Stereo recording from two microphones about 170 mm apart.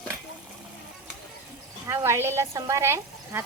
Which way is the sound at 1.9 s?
15° right (ahead or behind).